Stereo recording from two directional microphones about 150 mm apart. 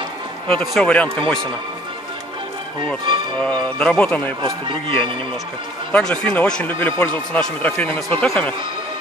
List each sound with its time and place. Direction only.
0.7 s speech: 10° left (ahead or behind)
3.8 s speech: 10° left (ahead or behind)
4.5 s speech: 35° right (ahead or behind)
5.9 s speech: 5° left (ahead or behind)